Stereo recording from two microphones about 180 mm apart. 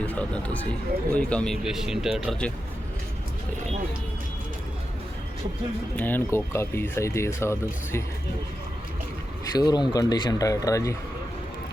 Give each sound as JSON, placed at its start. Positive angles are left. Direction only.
{"t": 0.0, "sound": "speech", "side_deg": 10}
{"t": 6.0, "sound": "speech", "side_deg": 10}
{"t": 9.6, "sound": "speech", "side_deg": 25}